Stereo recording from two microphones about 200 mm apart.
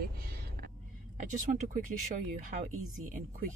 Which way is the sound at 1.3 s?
40° right (ahead or behind).